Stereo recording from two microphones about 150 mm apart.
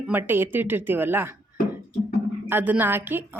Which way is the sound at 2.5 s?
10° right (ahead or behind).